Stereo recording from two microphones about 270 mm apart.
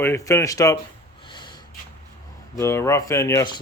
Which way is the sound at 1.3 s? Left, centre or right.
Centre.